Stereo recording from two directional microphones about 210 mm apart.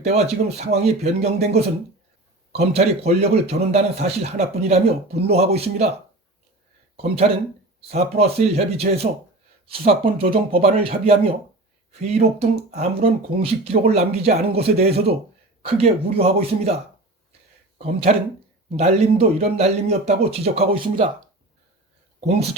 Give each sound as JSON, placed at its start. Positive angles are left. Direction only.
{"t": 0.0, "sound": "a man's voice", "side_deg": -30}
{"t": 2.5, "sound": "a man's voice", "side_deg": -30}
{"t": 6.9, "sound": "speech", "side_deg": -30}
{"t": 17.7, "sound": "a man's voice", "side_deg": -30}